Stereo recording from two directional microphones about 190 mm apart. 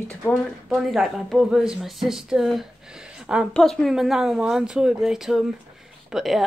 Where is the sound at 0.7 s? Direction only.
5° right (ahead or behind).